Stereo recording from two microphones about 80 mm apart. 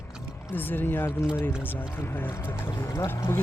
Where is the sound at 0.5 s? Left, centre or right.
Left.